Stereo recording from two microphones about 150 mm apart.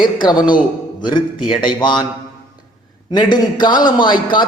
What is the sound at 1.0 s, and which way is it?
A man's voice, 30° left (ahead or behind).